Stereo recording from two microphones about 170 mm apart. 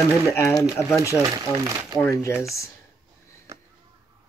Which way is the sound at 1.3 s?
15° right (ahead or behind).